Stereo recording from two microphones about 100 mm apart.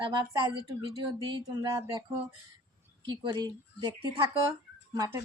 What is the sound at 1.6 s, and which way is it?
Speech, 35° right (ahead or behind).